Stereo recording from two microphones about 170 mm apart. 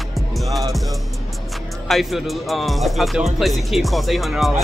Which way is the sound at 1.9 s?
Centre (ahead or behind).